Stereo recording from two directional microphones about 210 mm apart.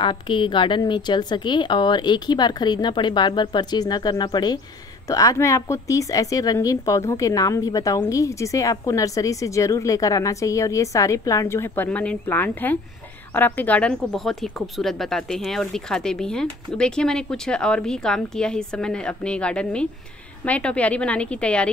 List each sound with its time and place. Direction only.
0.0 s a woman's voice: 20° left (ahead or behind); by 21.6 s 5° left (ahead or behind)